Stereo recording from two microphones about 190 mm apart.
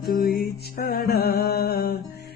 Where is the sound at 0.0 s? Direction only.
50° left (ahead or behind).